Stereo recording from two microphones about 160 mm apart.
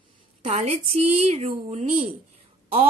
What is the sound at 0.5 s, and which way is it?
Speech, 40° right (ahead or behind).